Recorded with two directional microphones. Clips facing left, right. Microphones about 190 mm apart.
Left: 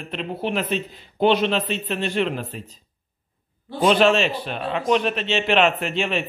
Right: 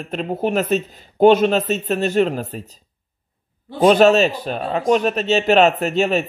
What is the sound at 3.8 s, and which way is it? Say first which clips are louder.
A man's voice: right 5 dB; 40° right (ahead or behind).